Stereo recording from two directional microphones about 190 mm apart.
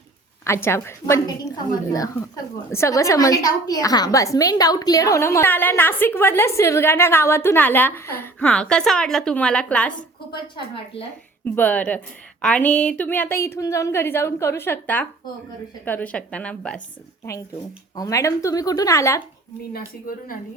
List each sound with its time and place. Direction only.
0.4 s a woman's voice: 15° left (ahead or behind)
11.4 s a woman's voice: 10° left (ahead or behind)
17.9 s a woman's voice: 15° left (ahead or behind)
19.7 s speech: 50° left (ahead or behind)